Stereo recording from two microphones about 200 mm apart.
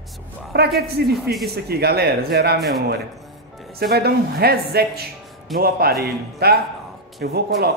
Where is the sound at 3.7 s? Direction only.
50° right (ahead or behind).